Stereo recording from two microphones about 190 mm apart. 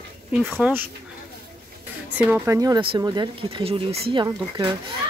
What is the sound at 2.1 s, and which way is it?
Speech, 10° right (ahead or behind).